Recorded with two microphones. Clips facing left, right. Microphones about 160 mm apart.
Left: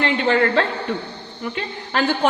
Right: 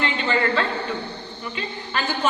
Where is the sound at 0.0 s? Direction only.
65° left (ahead or behind).